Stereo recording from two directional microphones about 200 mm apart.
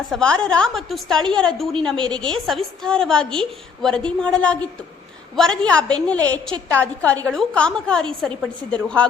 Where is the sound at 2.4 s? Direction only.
Centre (ahead or behind).